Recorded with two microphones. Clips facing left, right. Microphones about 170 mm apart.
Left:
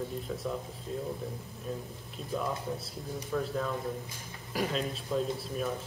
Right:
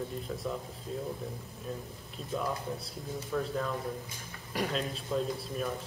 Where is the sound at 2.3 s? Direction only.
Centre (ahead or behind).